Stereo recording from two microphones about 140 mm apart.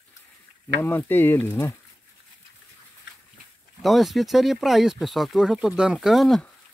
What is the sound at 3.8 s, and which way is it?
Speech, centre (ahead or behind).